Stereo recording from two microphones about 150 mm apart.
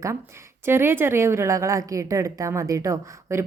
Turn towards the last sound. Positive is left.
turn(degrees=-20)  # may be behind; listen again after turning